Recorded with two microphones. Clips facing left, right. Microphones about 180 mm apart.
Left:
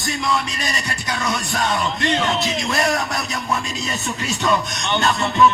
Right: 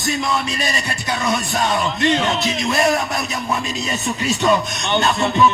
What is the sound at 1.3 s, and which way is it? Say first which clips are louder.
Music: right 3 dB; 25° right (ahead or behind).